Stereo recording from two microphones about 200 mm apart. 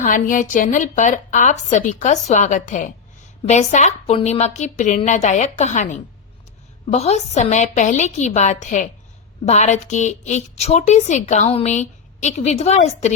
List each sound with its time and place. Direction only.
0.0 s a woman's voice: 40° left (ahead or behind)